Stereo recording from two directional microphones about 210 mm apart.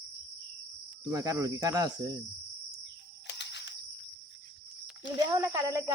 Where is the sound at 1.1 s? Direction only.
15° right (ahead or behind).